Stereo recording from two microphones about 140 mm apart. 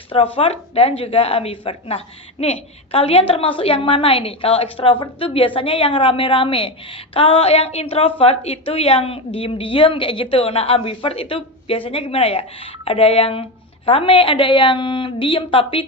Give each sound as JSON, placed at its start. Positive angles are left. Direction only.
{"t": 0.1, "sound": "a woman's voice", "side_deg": 40}